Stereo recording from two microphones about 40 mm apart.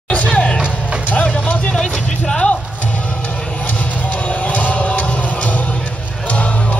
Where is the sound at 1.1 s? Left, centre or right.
Left.